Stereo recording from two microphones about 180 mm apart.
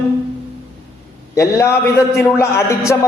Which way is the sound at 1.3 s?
15° left (ahead or behind).